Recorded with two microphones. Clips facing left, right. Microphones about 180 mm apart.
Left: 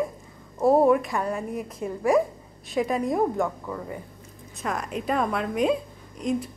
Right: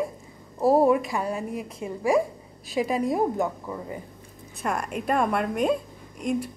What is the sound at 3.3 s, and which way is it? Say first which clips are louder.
Speech: even; 15° right (ahead or behind).